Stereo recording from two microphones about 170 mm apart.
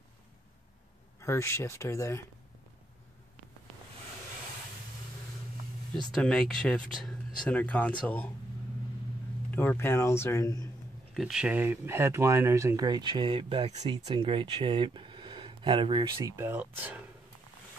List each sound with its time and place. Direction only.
1.2 s speech: 15° left (ahead or behind)
6.1 s speech: 5° left (ahead or behind)
9.5 s speech: 10° left (ahead or behind)
11.1 s speech: 5° right (ahead or behind)